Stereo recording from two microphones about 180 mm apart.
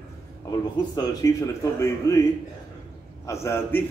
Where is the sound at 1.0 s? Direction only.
20° left (ahead or behind).